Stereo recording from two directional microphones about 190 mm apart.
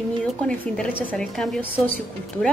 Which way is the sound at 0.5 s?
5° left (ahead or behind).